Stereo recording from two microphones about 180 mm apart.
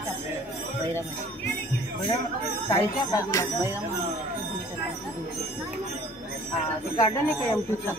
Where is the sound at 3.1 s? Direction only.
20° left (ahead or behind).